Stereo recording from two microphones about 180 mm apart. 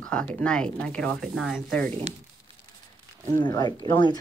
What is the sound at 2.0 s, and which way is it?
Crumpling, 30° right (ahead or behind).